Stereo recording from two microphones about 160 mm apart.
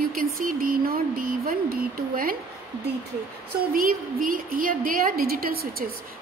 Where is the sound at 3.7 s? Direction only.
60° right (ahead or behind).